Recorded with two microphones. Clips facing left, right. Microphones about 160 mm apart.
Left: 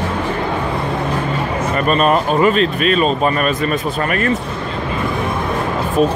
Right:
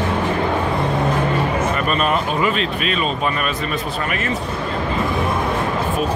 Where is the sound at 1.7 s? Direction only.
40° left (ahead or behind).